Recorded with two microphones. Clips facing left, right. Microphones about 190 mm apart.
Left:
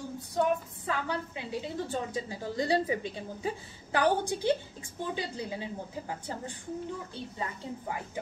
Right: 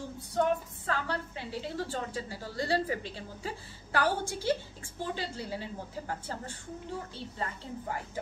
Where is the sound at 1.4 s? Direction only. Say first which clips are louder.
Left 1 dB; 15° left (ahead or behind).